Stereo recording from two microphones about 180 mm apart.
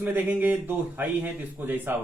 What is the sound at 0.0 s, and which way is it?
A man's voice, 10° right (ahead or behind).